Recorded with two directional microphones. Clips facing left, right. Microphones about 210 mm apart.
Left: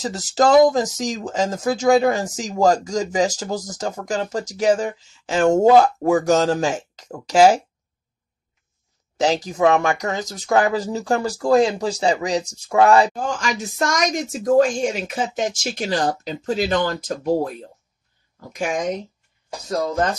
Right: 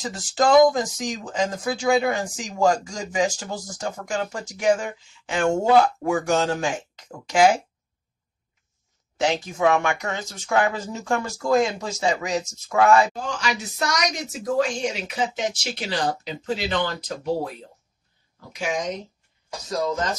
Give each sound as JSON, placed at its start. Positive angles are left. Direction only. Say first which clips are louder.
{"t": 0.0, "sound": "speech", "louder": "left 4 dB", "side_deg": 40}
{"t": 9.1, "sound": "speech", "louder": "left 4 dB", "side_deg": 40}
{"t": 13.1, "sound": "a woman's voice", "louder": "left 3 dB", "side_deg": 50}